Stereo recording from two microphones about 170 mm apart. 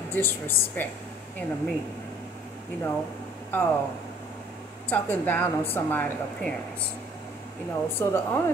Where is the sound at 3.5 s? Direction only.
10° left (ahead or behind).